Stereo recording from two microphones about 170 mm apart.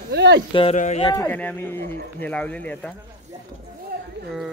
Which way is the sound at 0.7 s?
45° left (ahead or behind).